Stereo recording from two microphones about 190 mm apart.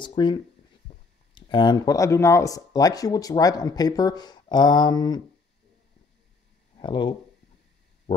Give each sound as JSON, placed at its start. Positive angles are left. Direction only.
{"t": 0.0, "sound": "speech", "side_deg": 25}
{"t": 6.8, "sound": "speech", "side_deg": 25}